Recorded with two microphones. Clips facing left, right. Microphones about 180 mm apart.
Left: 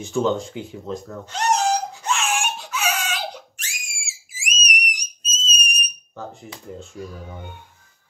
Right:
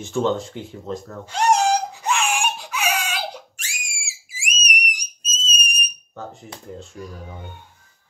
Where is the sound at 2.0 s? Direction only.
10° right (ahead or behind).